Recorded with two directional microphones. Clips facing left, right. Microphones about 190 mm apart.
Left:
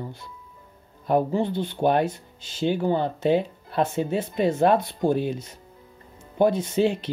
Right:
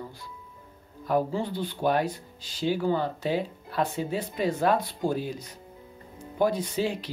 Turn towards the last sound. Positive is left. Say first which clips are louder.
# left 6 dB
turn(degrees=25)  # may be behind; listen again after turning